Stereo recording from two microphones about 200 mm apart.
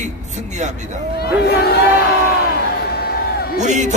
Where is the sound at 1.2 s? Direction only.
50° left (ahead or behind).